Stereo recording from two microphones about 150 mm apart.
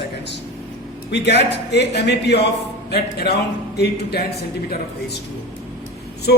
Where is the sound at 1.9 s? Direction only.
90° left.